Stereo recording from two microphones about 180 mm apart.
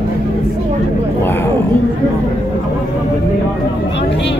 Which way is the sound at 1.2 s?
15° left (ahead or behind).